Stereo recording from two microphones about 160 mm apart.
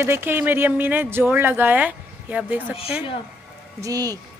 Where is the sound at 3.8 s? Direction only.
25° right (ahead or behind).